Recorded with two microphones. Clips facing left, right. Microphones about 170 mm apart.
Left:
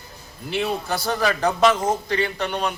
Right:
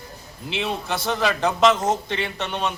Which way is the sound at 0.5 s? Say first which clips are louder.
Left 2 dB; centre (ahead or behind).